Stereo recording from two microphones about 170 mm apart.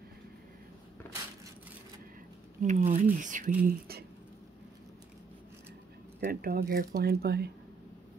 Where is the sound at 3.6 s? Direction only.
65° right (ahead or behind).